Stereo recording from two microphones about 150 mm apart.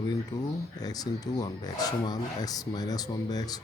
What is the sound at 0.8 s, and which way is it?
Speech, 25° left (ahead or behind).